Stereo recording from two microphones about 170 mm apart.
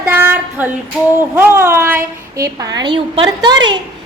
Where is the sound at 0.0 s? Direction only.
10° right (ahead or behind).